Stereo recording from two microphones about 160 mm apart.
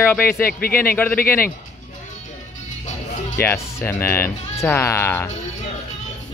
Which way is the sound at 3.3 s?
15° left (ahead or behind).